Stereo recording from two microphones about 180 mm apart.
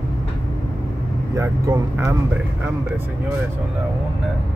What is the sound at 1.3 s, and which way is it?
Speech, 15° right (ahead or behind).